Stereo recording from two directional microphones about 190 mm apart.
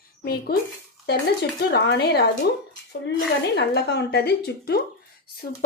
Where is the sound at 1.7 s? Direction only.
60° left (ahead or behind).